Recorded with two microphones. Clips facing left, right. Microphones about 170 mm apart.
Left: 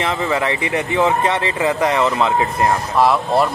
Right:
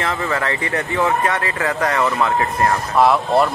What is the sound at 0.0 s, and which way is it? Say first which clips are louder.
Speech: left 2 dB; 15° left (ahead or behind).